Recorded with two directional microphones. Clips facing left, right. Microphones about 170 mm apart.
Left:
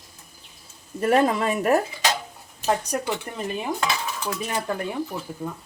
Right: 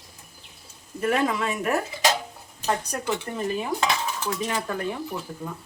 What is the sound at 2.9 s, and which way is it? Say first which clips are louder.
Speech: left 5 dB; 15° left (ahead or behind).